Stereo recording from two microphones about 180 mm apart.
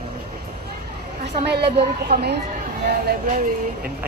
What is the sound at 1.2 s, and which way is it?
A woman's voice, 65° right (ahead or behind).